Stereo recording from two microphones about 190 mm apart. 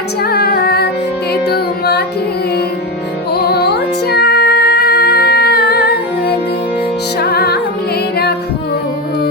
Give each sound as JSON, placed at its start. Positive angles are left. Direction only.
{"t": 0.2, "sound": "music", "side_deg": 55}
{"t": 3.3, "sound": "music", "side_deg": 55}